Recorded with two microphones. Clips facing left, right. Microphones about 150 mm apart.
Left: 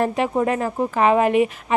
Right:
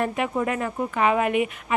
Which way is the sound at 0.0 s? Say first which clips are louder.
Left 4 dB; 35° left (ahead or behind).